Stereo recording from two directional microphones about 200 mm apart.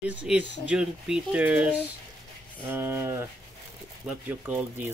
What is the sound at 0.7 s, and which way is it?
Speech, 5° right (ahead or behind).